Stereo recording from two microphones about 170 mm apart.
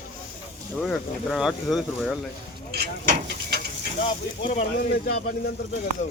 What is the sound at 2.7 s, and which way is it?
Speech, 70° right (ahead or behind).